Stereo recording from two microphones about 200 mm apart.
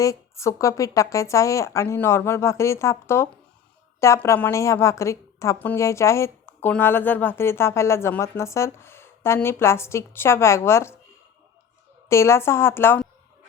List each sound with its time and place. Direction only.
0.0 s a woman's voice: 15° left (ahead or behind)
12.0 s a woman's voice: 15° left (ahead or behind)